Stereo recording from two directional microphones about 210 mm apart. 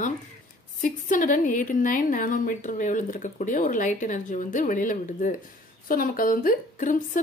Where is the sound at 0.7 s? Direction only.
40° left (ahead or behind).